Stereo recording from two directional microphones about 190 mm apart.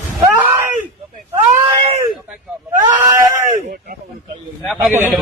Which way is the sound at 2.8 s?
20° right (ahead or behind).